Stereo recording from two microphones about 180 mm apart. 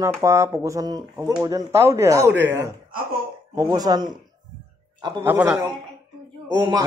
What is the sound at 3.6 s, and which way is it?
Speech, 20° right (ahead or behind).